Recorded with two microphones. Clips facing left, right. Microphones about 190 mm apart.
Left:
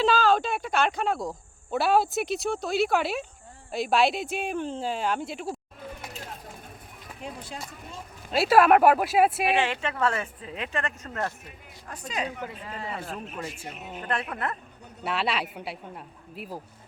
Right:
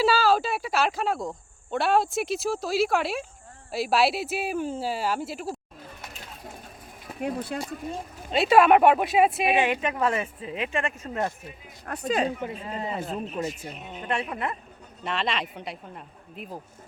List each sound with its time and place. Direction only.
0.0 s speech: 5° right (ahead or behind)
7.2 s speech: 60° right (ahead or behind)
8.3 s speech: 5° left (ahead or behind)
9.6 s speech: 15° right (ahead or behind)
11.9 s speech: 50° right (ahead or behind)
12.4 s speech: 25° right (ahead or behind)
13.5 s speech: 40° right (ahead or behind)
14.0 s speech: 10° right (ahead or behind)
15.0 s speech: 5° left (ahead or behind)